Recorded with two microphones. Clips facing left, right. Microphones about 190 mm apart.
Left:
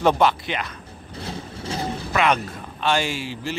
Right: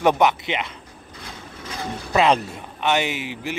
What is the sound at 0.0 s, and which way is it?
Speech, 15° right (ahead or behind).